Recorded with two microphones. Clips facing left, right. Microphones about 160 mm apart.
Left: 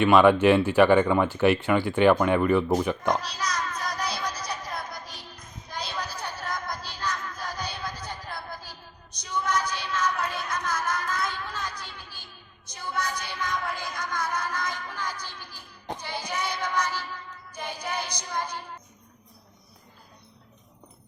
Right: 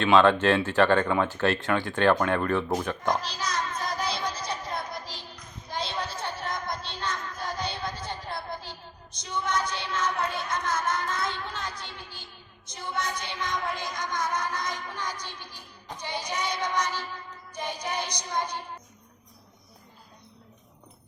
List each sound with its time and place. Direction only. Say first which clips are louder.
0.0 s speech: left 3 dB; 10° left (ahead or behind)
3.3 s a sound: even; 25° right (ahead or behind)
5.7 s music: right 2 dB; 25° right (ahead or behind)
16.0 s child singing: right 2 dB; 20° right (ahead or behind)
17.5 s music: right 1 dB; 20° right (ahead or behind)